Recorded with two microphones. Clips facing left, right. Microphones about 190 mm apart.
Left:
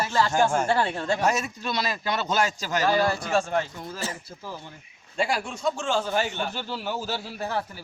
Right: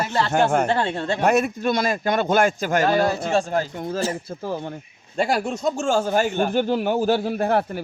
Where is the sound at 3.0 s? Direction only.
25° right (ahead or behind).